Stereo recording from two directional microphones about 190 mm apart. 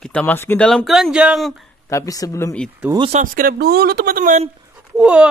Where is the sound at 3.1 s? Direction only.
45° right (ahead or behind).